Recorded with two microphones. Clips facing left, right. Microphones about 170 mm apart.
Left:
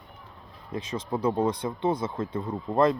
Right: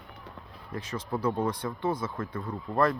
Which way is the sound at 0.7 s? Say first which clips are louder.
Left 3 dB; 20° left (ahead or behind).